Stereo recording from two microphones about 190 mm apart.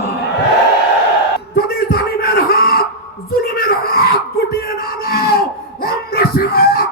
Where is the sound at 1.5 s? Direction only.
55° left (ahead or behind).